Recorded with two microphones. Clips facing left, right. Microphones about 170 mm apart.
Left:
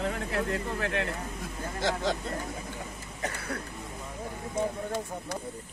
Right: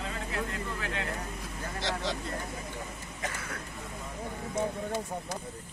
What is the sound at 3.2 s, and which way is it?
Speech, 35° left (ahead or behind).